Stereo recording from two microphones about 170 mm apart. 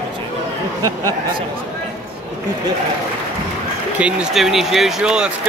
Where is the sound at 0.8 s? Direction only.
20° right (ahead or behind).